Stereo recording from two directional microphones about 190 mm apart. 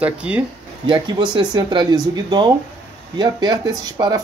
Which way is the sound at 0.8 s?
20° right (ahead or behind).